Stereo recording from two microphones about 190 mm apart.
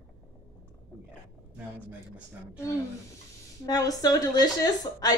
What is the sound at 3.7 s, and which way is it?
A woman's voice, 20° left (ahead or behind).